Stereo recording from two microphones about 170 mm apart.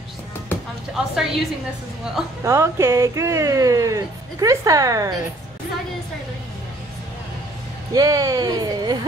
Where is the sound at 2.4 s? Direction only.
15° right (ahead or behind).